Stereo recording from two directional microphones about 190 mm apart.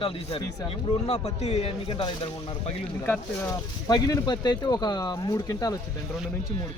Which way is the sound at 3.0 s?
10° left (ahead or behind).